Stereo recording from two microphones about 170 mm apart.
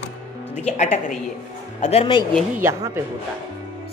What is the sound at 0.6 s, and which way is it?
A woman's voice, 40° left (ahead or behind).